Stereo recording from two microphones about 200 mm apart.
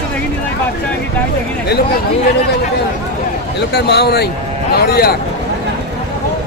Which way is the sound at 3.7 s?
55° left (ahead or behind).